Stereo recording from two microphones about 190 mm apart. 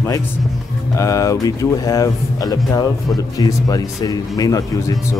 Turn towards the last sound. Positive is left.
turn(degrees=20)  # may be behind; listen again after turning